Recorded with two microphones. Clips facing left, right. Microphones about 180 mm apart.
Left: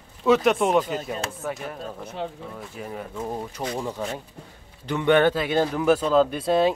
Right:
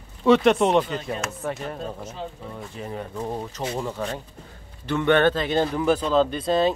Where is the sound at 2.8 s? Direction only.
5° left (ahead or behind).